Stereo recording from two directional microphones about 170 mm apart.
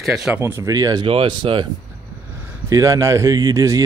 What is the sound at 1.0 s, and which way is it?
Speech, 30° right (ahead or behind).